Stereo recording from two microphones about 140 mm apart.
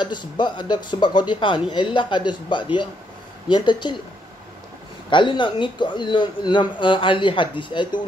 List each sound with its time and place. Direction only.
0.0 s speech: 35° left (ahead or behind)
5.1 s speech: 35° left (ahead or behind)